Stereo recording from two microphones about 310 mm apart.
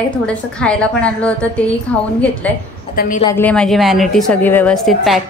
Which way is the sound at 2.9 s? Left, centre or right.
Left.